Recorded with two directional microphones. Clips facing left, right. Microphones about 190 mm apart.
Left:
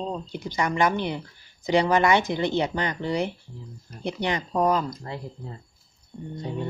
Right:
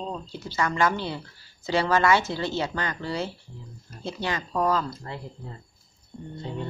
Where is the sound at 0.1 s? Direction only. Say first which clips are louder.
Left 3 dB; 15° left (ahead or behind).